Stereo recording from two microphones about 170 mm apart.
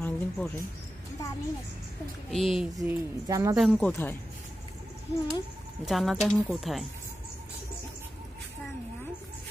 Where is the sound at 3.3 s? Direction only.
20° right (ahead or behind).